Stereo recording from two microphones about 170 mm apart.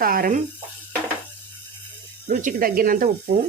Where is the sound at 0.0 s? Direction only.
60° right (ahead or behind).